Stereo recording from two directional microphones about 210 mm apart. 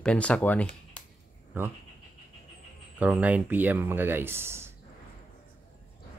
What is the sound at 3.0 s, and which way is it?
Speech, 5° right (ahead or behind).